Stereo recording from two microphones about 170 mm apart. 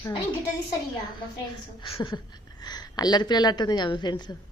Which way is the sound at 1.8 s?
30° left (ahead or behind).